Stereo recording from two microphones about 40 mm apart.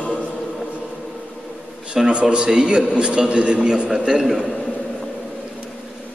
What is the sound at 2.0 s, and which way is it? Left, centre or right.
A man's voice, right.